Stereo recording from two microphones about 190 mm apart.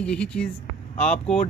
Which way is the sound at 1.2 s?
35° left (ahead or behind).